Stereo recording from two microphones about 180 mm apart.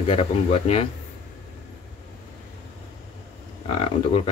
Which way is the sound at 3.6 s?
30° left (ahead or behind).